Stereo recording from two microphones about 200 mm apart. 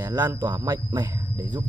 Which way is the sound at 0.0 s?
20° right (ahead or behind).